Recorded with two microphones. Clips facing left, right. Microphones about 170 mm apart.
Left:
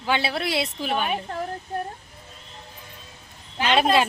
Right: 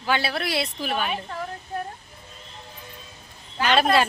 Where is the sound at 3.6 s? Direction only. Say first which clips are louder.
Even; 20° left (ahead or behind).